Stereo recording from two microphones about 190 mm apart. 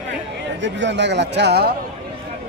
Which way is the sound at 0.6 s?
65° right (ahead or behind).